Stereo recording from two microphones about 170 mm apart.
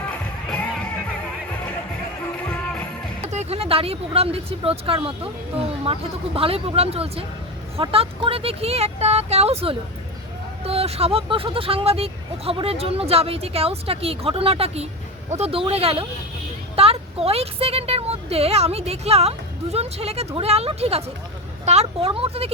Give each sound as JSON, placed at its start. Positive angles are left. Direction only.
{"t": 3.3, "sound": "speech", "side_deg": -35}